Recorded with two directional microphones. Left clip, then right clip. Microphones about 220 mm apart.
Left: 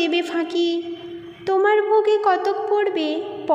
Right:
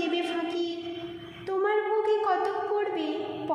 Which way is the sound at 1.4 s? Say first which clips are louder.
Left 9 dB; 35° left (ahead or behind).